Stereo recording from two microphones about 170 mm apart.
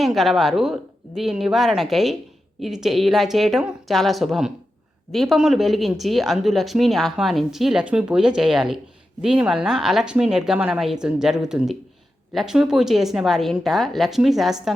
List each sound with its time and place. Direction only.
0.0 s speech: centre (ahead or behind)